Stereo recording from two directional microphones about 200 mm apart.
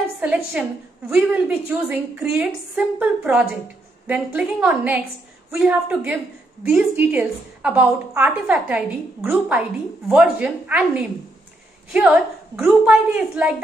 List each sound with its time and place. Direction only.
0.2 s a woman's voice: 5° right (ahead or behind)